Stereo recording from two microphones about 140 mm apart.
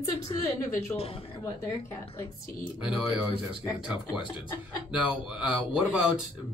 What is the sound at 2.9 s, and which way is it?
Speech, 5° right (ahead or behind).